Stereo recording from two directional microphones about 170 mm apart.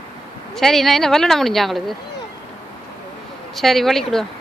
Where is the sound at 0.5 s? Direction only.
Centre (ahead or behind).